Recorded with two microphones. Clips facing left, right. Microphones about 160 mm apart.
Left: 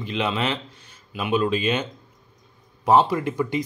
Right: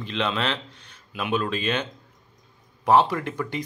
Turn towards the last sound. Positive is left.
turn(degrees=10)  # may be behind; listen again after turning